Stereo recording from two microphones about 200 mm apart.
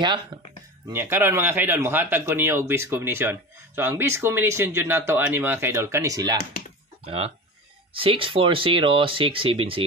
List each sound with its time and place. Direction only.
0.8 s speech: 10° right (ahead or behind)
7.1 s speech: 30° right (ahead or behind)